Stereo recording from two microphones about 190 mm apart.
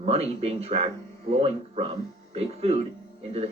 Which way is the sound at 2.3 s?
30° right (ahead or behind).